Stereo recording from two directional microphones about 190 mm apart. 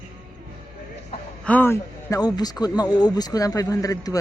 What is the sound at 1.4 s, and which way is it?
Speech, 10° left (ahead or behind).